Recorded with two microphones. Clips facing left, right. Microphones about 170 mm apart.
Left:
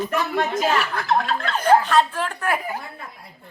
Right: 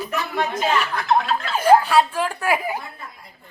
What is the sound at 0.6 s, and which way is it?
Speech, centre (ahead or behind).